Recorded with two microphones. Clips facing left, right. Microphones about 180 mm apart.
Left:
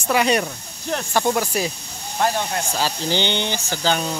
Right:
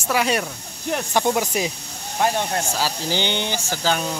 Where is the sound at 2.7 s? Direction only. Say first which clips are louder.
Left 2 dB; 10° right (ahead or behind).